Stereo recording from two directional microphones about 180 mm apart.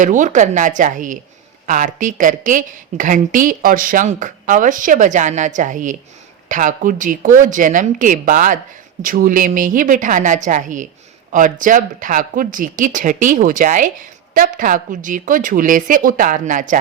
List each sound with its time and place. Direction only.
0.0 s speech: 45° right (ahead or behind)